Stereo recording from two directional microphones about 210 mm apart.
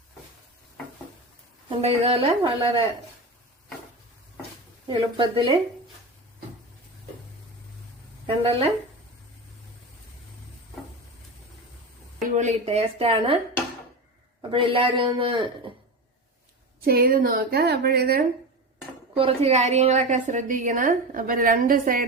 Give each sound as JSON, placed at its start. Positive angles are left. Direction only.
{"t": 1.7, "sound": "a woman's voice", "side_deg": -25}
{"t": 4.9, "sound": "a woman's voice", "side_deg": -25}
{"t": 8.4, "sound": "a woman's voice", "side_deg": -25}
{"t": 12.2, "sound": "a woman's voice", "side_deg": -35}
{"t": 14.5, "sound": "a woman's voice", "side_deg": -25}
{"t": 16.8, "sound": "a woman's voice", "side_deg": -45}
{"t": 19.1, "sound": "a woman's voice", "side_deg": -25}